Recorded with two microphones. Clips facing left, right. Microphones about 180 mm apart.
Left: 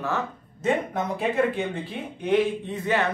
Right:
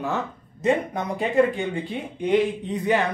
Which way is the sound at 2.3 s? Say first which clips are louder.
Right 1 dB; 15° right (ahead or behind).